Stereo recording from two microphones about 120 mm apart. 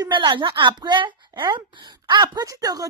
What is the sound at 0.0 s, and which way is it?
Speech, 40° right (ahead or behind).